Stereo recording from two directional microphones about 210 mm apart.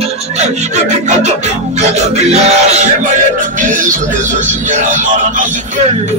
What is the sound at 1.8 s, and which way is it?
Speech, 30° right (ahead or behind).